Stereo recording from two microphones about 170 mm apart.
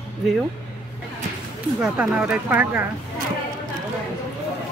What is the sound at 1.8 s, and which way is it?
Speech, 5° right (ahead or behind).